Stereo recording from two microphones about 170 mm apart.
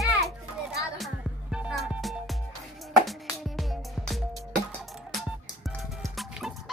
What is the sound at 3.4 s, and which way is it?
Music, centre (ahead or behind).